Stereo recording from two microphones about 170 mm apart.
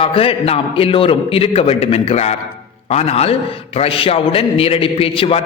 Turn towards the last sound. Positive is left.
turn(degrees=35)  # may be behind; listen again after turning